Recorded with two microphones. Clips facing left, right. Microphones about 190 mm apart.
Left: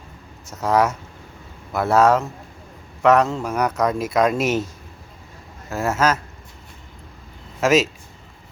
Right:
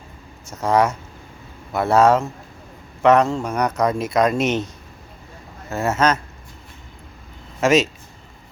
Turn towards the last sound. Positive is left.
turn(degrees=0)  # may be behind; listen again after turning